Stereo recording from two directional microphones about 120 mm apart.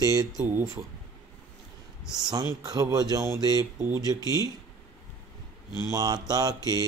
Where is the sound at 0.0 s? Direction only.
30° right (ahead or behind).